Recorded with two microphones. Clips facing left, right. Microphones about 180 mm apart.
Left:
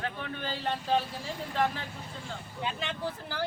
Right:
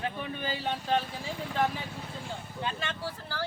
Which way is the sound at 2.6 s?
15° left (ahead or behind).